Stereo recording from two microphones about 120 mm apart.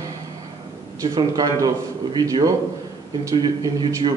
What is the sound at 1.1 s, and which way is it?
A man's voice, 35° right (ahead or behind).